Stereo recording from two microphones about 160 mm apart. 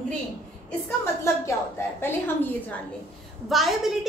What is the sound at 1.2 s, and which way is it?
A woman's voice, 15° left (ahead or behind).